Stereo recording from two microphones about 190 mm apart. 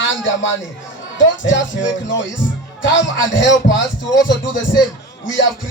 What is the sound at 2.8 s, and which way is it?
Music, 75° left (ahead or behind).